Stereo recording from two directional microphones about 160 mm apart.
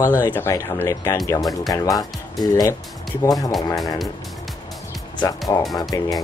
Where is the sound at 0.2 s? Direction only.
15° left (ahead or behind).